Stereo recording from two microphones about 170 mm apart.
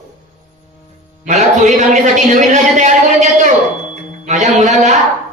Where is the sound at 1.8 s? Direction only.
45° right (ahead or behind).